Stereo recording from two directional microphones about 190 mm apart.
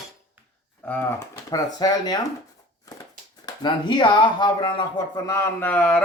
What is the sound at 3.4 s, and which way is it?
Speech, 25° left (ahead or behind).